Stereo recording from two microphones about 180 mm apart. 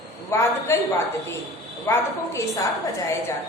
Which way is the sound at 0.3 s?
15° left (ahead or behind).